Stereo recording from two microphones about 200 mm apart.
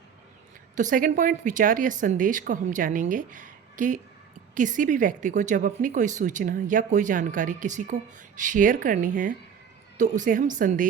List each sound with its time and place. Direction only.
0.8 s a woman's voice: 40° right (ahead or behind)